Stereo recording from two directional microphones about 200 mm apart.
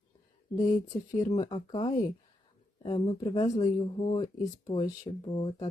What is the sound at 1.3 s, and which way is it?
Speech, 25° left (ahead or behind).